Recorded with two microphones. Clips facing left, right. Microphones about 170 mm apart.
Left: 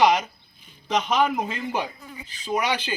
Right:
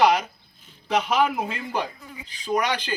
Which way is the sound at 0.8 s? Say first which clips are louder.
Even; 10° right (ahead or behind).